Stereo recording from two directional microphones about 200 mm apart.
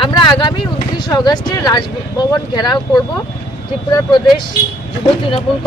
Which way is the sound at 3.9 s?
25° left (ahead or behind).